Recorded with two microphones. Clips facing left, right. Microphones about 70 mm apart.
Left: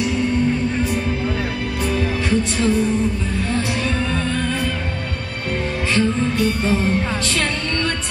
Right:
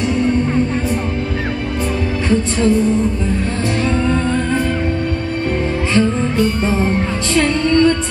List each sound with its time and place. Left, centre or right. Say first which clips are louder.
4.1 s music: right 5 dB; right
5.9 s music: right 3 dB; right